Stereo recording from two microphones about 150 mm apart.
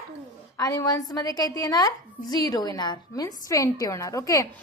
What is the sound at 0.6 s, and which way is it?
A woman's voice, 25° left (ahead or behind).